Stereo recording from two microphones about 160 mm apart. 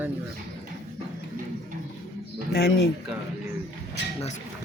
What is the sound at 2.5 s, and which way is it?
Speech, 80° left.